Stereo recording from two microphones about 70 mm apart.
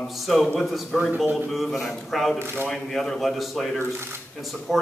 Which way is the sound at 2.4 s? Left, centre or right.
Right.